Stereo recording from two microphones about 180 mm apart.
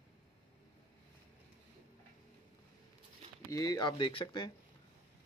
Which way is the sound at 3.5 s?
20° left (ahead or behind).